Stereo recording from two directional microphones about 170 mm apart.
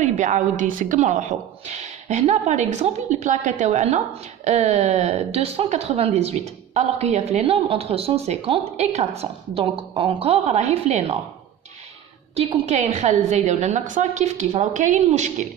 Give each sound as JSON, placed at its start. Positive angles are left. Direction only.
{"t": 0.0, "sound": "a woman's voice", "side_deg": -45}
{"t": 12.4, "sound": "a woman's voice", "side_deg": -40}